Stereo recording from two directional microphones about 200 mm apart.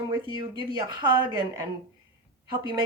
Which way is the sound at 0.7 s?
20° right (ahead or behind).